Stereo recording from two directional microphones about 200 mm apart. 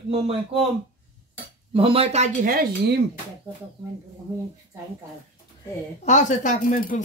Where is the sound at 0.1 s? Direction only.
30° right (ahead or behind).